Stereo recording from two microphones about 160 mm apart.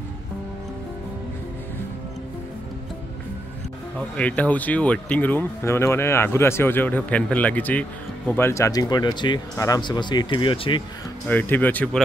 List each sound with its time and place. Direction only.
4.2 s speech: 10° left (ahead or behind); by 10.8 s 35° left (ahead or behind)
11.2 s speech: 10° left (ahead or behind)